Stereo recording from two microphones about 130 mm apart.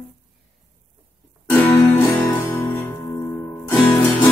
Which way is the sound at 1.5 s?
20° left (ahead or behind).